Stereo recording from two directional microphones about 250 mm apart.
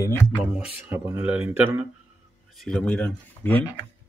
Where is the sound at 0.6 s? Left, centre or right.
Centre.